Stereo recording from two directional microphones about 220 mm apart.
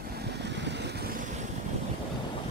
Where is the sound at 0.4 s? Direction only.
50° right (ahead or behind).